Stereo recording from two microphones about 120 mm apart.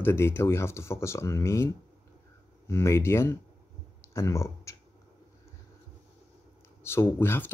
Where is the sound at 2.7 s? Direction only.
20° left (ahead or behind).